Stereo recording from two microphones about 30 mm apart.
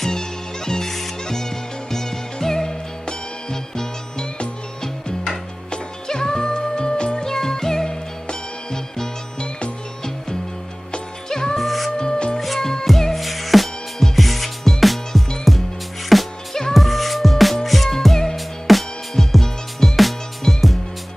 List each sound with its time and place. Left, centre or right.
0.0 s music: centre
7.2 s music: centre
11.2 s music: centre
11.5 s music: centre
12.0 s music: left
12.5 s music: centre
12.8 s music: centre